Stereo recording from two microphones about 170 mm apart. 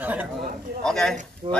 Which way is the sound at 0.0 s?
10° right (ahead or behind).